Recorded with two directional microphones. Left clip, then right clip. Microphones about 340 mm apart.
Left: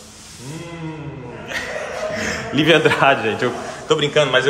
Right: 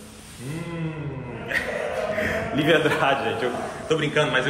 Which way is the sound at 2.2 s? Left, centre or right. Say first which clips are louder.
Left 6 dB; left.